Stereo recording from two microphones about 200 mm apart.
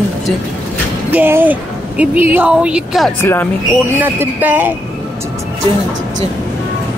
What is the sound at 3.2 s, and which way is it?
Speech, 10° left (ahead or behind).